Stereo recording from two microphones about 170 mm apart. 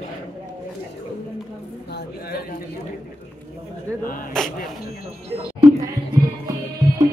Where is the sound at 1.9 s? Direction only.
70° left (ahead or behind).